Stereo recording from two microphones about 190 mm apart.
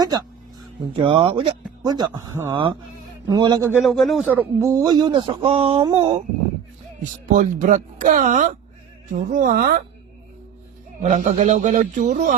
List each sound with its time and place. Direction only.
0.9 s speech: 25° right (ahead or behind)
3.8 s speech: centre (ahead or behind); by 6.2 s 30° right (ahead or behind)
7.3 s speech: 40° right (ahead or behind)
11.0 s a man's voice: 40° right (ahead or behind)